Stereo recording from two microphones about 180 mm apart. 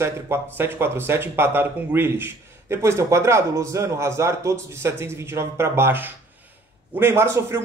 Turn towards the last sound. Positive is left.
turn(degrees=-15)  # may be behind; listen again after turning